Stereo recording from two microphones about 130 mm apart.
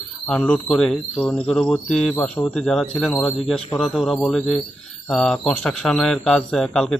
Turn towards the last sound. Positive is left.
turn(degrees=5)  # may be behind; listen again after turning